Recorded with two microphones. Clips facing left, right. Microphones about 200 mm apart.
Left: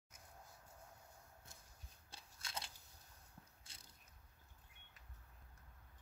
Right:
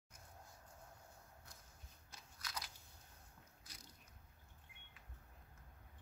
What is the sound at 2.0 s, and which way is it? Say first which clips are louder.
Crunch: right 1 dB; 25° left (ahead or behind).